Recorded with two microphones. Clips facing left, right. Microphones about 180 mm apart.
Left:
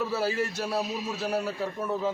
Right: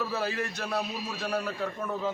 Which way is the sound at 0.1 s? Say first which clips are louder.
Left 3 dB; 5° left (ahead or behind).